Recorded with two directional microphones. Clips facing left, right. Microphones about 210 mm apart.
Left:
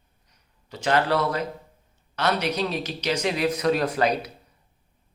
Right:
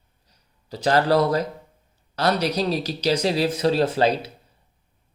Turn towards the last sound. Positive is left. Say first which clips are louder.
# right 3 dB
turn(degrees=-30)  # may be behind; listen again after turning